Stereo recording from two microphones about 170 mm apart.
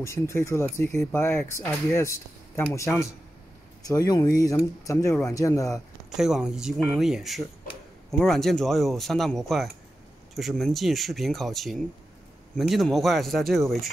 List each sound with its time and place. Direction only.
0.0 s speech: 15° left (ahead or behind)
5.3 s speech: 20° left (ahead or behind)
6.0 s speech: centre (ahead or behind)